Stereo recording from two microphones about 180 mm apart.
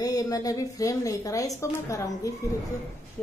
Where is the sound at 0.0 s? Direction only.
20° left (ahead or behind).